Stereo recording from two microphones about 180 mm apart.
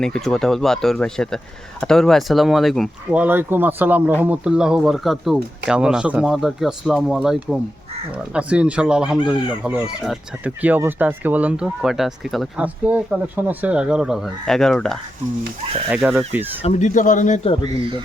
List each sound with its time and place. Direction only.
0.0 s speech: 5° left (ahead or behind)
3.2 s speech: 10° right (ahead or behind)
15.9 s speech: 10° right (ahead or behind)
16.6 s a man's voice: 40° left (ahead or behind)